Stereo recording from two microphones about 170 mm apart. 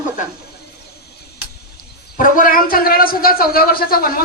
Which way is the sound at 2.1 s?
50° left (ahead or behind).